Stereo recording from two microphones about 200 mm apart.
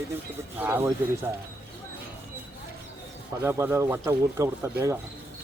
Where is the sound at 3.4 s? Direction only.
15° right (ahead or behind).